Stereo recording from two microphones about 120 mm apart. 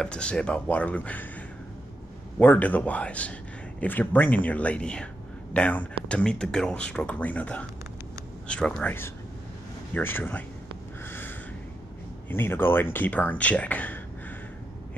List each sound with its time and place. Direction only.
0.0 s speech: 10° left (ahead or behind)
2.3 s speech: 15° left (ahead or behind)
9.9 s speech: 20° left (ahead or behind)
11.1 s a sound: 15° left (ahead or behind)
12.3 s speech: 20° left (ahead or behind)